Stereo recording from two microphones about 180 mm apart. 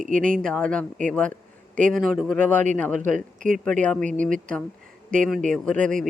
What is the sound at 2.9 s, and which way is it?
Speech, 45° right (ahead or behind).